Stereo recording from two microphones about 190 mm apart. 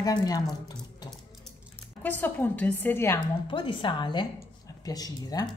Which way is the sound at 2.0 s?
10° left (ahead or behind).